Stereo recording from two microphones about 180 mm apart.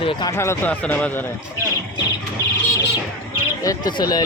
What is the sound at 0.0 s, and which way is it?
Speech, 25° left (ahead or behind).